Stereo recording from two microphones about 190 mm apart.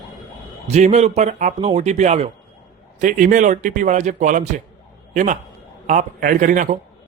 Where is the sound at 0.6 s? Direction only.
35° right (ahead or behind).